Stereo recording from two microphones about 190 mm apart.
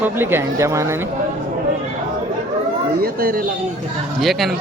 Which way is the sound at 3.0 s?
50° right (ahead or behind).